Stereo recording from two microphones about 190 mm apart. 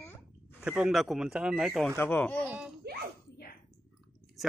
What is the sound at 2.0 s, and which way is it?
Speech, 10° left (ahead or behind).